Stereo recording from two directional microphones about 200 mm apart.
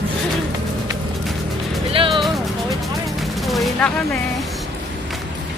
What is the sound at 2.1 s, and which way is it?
Speech, centre (ahead or behind).